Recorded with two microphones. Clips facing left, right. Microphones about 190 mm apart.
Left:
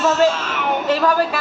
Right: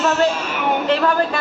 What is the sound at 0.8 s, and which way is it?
Speech, 10° left (ahead or behind).